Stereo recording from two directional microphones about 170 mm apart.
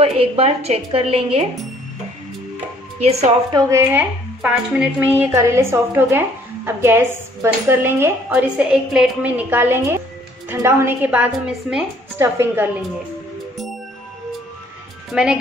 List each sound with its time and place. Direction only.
0.0 s a woman's voice: 35° right (ahead or behind)
3.0 s a woman's voice: 40° right (ahead or behind)
3.5 s speech: 20° right (ahead or behind)
15.1 s speech: 5° right (ahead or behind)